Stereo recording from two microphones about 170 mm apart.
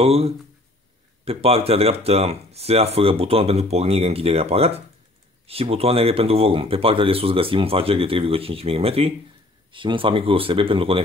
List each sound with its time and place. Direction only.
0.0 s speech: 35° right (ahead or behind)